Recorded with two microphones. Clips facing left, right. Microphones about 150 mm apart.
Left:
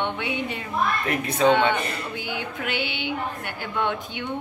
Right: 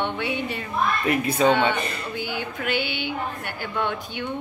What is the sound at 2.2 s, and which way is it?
Speech, 20° left (ahead or behind).